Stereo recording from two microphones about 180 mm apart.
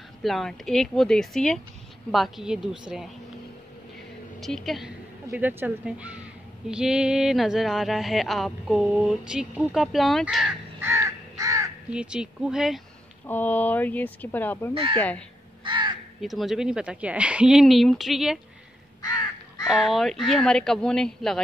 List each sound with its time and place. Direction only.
0.2 s speech: centre (ahead or behind)
4.4 s a woman's voice: centre (ahead or behind)
6.7 s a sound: 5° right (ahead or behind)
11.9 s speech: 5° right (ahead or behind)
13.3 s speech: 10° left (ahead or behind)
14.7 s speech: 30° right (ahead or behind)
15.0 s speech: 5° left (ahead or behind)
15.6 s crow: 25° right (ahead or behind)
16.2 s speech: centre (ahead or behind)
18.9 s crow: 20° left (ahead or behind)
19.7 s speech: centre (ahead or behind)